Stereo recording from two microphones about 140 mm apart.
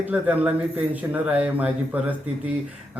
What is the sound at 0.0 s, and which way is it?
Speech, 10° right (ahead or behind).